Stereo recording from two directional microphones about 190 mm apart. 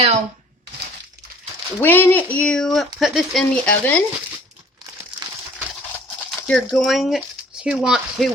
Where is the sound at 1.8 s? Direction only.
10° left (ahead or behind).